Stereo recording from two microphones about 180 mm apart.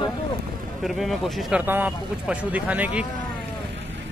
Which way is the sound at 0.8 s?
Centre (ahead or behind).